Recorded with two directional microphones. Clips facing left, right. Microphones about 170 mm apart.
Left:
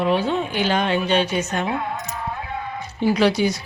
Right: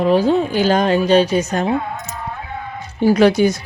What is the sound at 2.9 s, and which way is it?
Speech, 45° right (ahead or behind).